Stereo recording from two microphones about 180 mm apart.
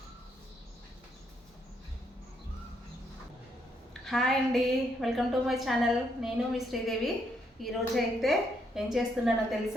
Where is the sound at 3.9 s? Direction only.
Centre (ahead or behind).